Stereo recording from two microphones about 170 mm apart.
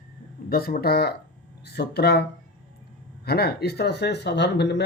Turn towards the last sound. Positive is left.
turn(degrees=90)